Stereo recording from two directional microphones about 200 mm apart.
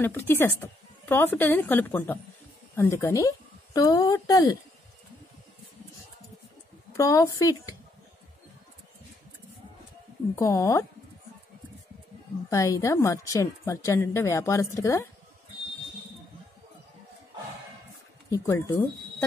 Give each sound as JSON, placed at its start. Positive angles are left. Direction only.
{"t": 0.0, "sound": "a woman's voice", "side_deg": 10}
{"t": 6.9, "sound": "a woman's voice", "side_deg": 15}
{"t": 10.3, "sound": "a woman's voice", "side_deg": 15}
{"t": 12.4, "sound": "a woman's voice", "side_deg": 15}
{"t": 18.3, "sound": "speech", "side_deg": 15}